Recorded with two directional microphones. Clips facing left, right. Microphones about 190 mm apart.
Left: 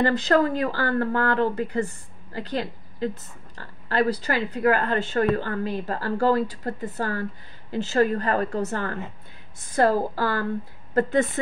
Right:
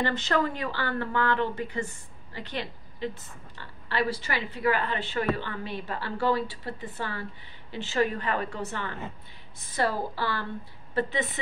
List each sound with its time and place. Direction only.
0.0 s speech: 40° left (ahead or behind)